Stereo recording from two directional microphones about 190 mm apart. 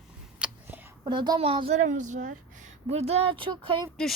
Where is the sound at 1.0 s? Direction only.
20° right (ahead or behind).